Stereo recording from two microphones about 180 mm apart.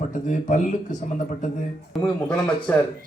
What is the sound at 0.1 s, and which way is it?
Speech, 45° left (ahead or behind).